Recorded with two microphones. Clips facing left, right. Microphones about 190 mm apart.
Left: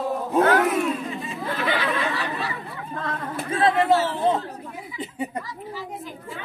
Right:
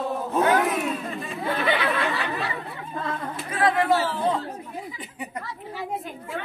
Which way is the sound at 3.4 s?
25° left (ahead or behind).